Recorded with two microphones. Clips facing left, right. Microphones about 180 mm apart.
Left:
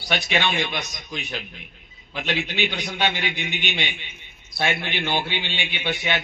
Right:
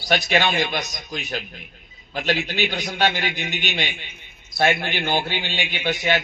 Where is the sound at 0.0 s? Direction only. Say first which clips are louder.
Right 4 dB; 40° right (ahead or behind).